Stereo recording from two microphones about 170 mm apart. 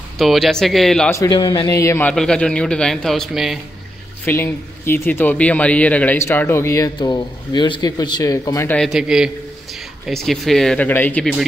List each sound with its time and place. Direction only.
0.2 s a man's voice: centre (ahead or behind)
1.1 s a man's voice: 20° left (ahead or behind); by 3.5 s centre (ahead or behind)
4.3 s speech: 15° left (ahead or behind)
8.7 s a man's voice: centre (ahead or behind)